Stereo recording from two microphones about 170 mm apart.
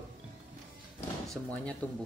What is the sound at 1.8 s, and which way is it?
Speech, 10° left (ahead or behind).